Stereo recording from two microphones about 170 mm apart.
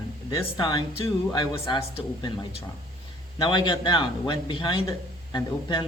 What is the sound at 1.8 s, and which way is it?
Speech, 35° left (ahead or behind).